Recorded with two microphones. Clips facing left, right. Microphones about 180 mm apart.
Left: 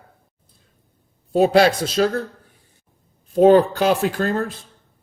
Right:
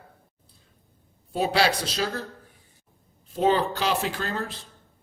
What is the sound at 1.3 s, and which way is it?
Speech, 45° left (ahead or behind).